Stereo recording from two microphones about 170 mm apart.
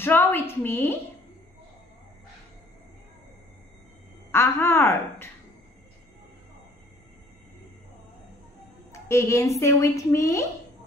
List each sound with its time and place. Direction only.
0.0 s a woman's voice: 15° left (ahead or behind)
4.3 s a woman's voice: 15° left (ahead or behind)
8.9 s a woman's voice: 15° left (ahead or behind)